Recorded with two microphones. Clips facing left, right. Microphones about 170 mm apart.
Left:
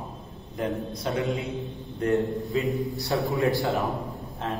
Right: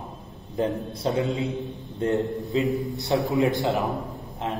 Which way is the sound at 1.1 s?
30° right (ahead or behind).